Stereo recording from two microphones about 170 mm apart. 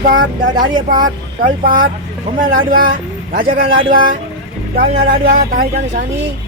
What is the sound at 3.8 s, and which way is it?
Speech, 30° right (ahead or behind).